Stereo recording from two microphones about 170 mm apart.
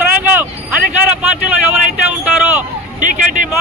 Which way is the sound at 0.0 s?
10° right (ahead or behind).